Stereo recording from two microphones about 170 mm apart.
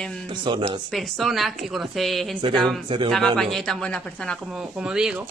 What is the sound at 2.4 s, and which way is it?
Speech, 30° right (ahead or behind).